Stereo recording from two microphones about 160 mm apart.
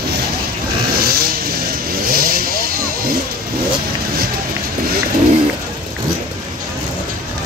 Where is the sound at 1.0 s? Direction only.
70° right (ahead or behind).